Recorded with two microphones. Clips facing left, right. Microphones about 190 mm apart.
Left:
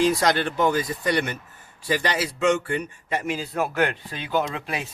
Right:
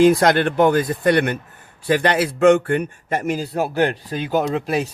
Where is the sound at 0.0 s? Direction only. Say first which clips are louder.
Right 7 dB; 55° right (ahead or behind).